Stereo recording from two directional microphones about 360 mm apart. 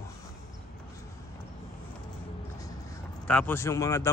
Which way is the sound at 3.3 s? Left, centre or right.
Centre.